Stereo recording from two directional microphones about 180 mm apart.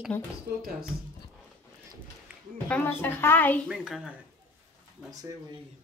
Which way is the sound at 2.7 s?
10° left (ahead or behind).